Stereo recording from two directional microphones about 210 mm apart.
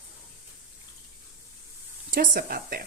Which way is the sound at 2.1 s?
45° right (ahead or behind).